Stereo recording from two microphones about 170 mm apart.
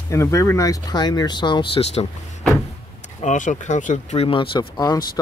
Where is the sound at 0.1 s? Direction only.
20° left (ahead or behind); by 2.0 s 35° left (ahead or behind).